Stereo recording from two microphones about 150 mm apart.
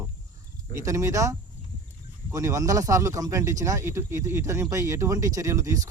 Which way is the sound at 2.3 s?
20° right (ahead or behind).